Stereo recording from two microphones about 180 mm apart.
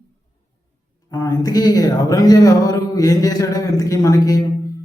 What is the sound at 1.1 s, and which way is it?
Speech, 20° left (ahead or behind).